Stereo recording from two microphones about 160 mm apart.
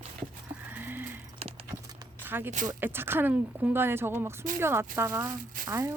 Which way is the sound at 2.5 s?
55° right (ahead or behind).